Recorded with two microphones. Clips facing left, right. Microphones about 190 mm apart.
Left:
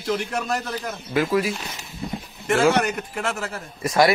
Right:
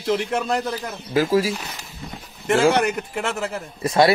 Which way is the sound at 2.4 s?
30° right (ahead or behind).